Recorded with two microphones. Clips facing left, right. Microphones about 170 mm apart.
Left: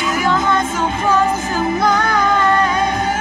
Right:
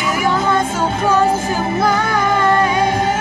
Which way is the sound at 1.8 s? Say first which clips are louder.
Right 1 dB; 5° right (ahead or behind).